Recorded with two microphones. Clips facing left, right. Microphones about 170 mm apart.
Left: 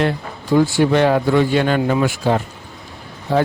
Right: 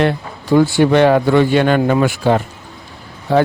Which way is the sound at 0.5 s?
65° right (ahead or behind).